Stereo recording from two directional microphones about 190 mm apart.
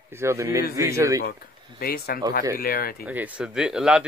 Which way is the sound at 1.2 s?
55° left (ahead or behind).